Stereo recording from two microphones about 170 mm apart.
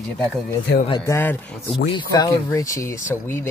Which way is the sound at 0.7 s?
80° left.